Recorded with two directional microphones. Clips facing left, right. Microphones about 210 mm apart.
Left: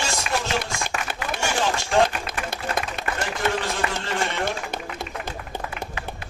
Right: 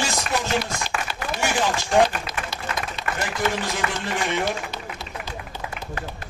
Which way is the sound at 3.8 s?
35° left (ahead or behind).